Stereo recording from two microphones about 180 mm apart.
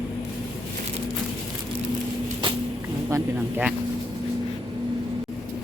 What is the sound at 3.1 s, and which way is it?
Speech, 10° right (ahead or behind).